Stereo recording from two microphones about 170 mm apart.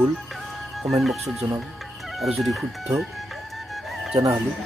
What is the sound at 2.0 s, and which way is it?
Music, centre (ahead or behind).